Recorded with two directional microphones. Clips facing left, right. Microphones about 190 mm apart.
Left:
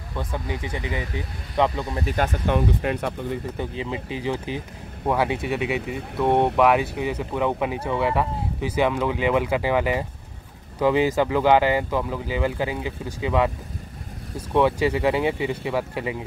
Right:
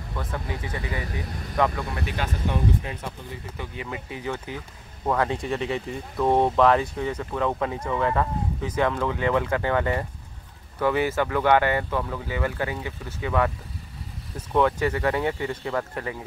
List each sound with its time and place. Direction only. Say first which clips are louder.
0.2 s speech: left 3 dB; 15° left (ahead or behind)
2.0 s speech: left 6 dB; 50° left (ahead or behind)
2.4 s speech: left 2 dB; 65° left (ahead or behind)
3.5 s speech: left 5 dB; 25° left (ahead or behind)
5.0 s speech: left 2 dB; 10° left (ahead or behind)
14.5 s speech: left 2 dB; 10° left (ahead or behind)